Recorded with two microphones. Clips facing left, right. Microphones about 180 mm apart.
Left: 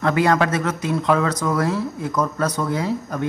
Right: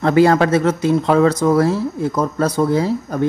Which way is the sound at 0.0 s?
30° right (ahead or behind).